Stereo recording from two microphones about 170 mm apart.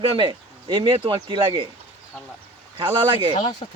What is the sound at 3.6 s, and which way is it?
Speech, 40° left (ahead or behind).